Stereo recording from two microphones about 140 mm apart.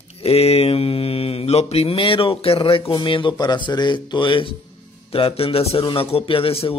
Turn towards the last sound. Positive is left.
turn(degrees=40)  # may be behind; listen again after turning